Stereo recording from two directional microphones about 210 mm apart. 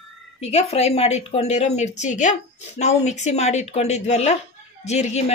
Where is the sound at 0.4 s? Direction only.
30° left (ahead or behind).